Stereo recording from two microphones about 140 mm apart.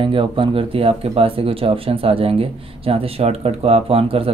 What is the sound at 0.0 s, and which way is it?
Speech, 40° right (ahead or behind).